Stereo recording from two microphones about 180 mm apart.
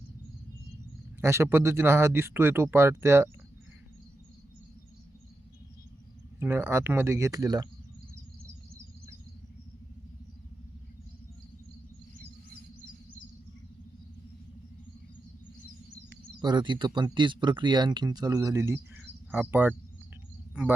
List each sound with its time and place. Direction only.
1.2 s speech: 15° right (ahead or behind)
6.4 s speech: 15° right (ahead or behind)
16.4 s speech: 25° right (ahead or behind); by 20.7 s 5° right (ahead or behind)